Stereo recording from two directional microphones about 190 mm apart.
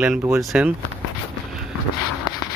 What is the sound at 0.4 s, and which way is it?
Speech, 5° right (ahead or behind).